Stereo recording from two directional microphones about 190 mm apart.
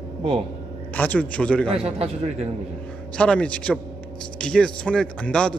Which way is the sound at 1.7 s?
30° right (ahead or behind).